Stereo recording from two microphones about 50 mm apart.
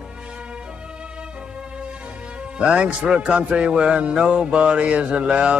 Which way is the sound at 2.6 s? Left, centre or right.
Right.